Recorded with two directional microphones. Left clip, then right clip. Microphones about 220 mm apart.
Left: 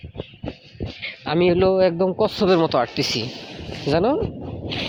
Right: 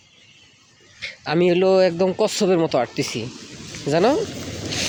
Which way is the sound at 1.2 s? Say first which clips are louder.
Even; 20° right (ahead or behind).